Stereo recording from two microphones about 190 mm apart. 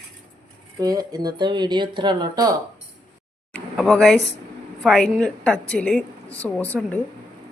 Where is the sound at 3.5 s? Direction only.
Centre (ahead or behind).